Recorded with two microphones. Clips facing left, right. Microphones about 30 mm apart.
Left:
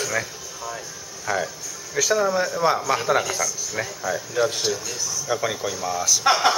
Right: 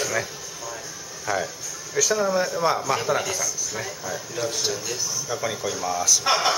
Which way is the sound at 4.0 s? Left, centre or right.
Left.